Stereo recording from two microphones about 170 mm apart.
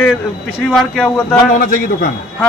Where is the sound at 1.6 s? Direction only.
55° left (ahead or behind).